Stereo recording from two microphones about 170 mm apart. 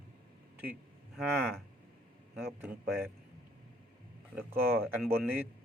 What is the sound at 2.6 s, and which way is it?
Speech, 10° right (ahead or behind).